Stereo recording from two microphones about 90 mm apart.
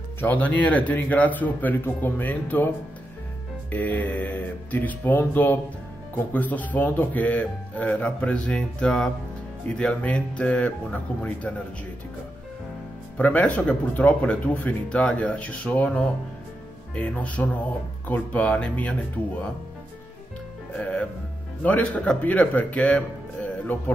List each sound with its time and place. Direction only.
0.2 s speech: 15° left (ahead or behind)
3.7 s a man's voice: 15° left (ahead or behind)
13.2 s a man's voice: 15° left (ahead or behind)
20.7 s a man's voice: 15° left (ahead or behind)